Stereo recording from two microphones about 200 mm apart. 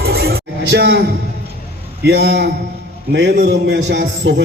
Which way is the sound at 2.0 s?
60° right (ahead or behind).